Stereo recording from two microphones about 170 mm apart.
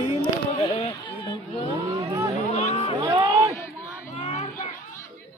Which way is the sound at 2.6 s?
40° left (ahead or behind).